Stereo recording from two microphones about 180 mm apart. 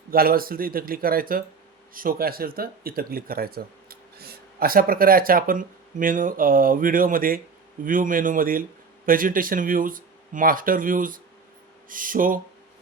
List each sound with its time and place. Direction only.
0.1 s speech: 55° right (ahead or behind)